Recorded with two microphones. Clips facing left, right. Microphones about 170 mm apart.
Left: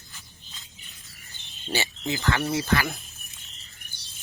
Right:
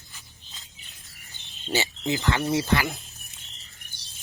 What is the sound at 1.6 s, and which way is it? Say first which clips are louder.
Speech: right 2 dB; 20° right (ahead or behind).